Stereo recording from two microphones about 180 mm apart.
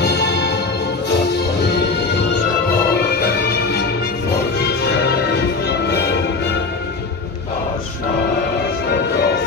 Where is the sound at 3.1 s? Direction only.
60° left (ahead or behind).